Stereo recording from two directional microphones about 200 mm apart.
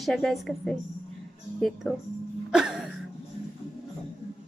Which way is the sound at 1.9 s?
Centre (ahead or behind).